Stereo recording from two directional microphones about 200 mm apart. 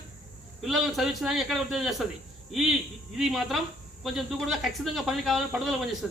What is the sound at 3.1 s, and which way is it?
Speech, centre (ahead or behind).